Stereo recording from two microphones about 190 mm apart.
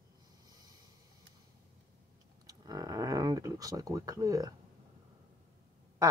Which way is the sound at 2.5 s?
20° right (ahead or behind).